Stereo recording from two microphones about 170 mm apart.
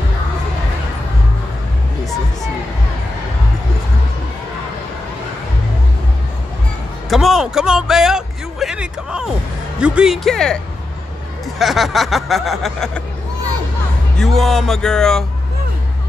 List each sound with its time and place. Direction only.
7.1 s speech: centre (ahead or behind)
14.1 s speech: centre (ahead or behind)